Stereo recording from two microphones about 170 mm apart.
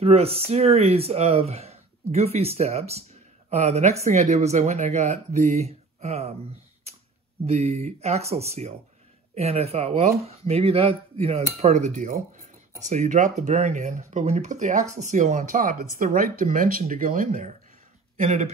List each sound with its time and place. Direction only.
0.0 s speech: 35° right (ahead or behind)
7.4 s speech: 40° right (ahead or behind)